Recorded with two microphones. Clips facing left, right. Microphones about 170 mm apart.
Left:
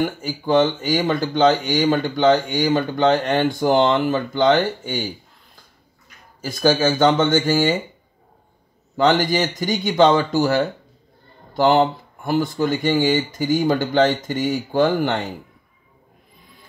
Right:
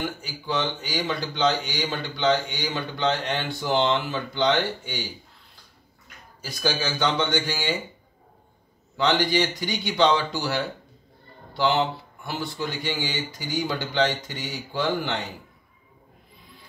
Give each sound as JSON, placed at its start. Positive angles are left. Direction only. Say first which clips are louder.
{"t": 0.0, "sound": "speech", "louder": "left 9 dB", "side_deg": 50}
{"t": 6.4, "sound": "speech", "louder": "left 10 dB", "side_deg": 50}
{"t": 8.9, "sound": "speech", "louder": "left 5 dB", "side_deg": 45}